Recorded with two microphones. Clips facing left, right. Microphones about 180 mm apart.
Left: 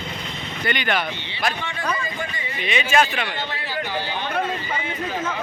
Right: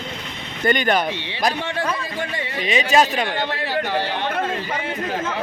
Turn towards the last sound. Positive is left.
turn(degrees=-70)  # may be behind; listen again after turning